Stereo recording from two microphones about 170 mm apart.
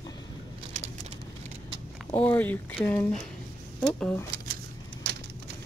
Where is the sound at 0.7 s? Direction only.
45° right (ahead or behind).